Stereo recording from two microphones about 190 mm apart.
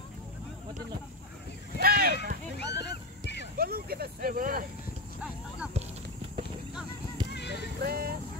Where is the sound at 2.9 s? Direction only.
65° left (ahead or behind).